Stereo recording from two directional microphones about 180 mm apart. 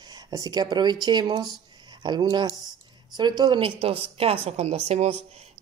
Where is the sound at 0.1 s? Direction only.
20° right (ahead or behind).